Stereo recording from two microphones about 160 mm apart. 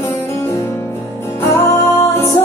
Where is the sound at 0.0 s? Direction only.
15° left (ahead or behind).